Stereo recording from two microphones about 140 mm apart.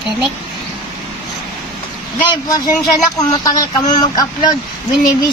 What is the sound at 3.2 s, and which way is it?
Speech, 30° left (ahead or behind).